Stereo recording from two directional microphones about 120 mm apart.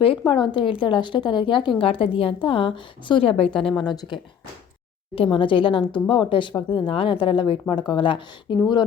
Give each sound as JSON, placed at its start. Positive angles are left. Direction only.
{"t": 0.0, "sound": "a woman's voice", "side_deg": 45}
{"t": 3.8, "sound": "a woman's voice", "side_deg": 40}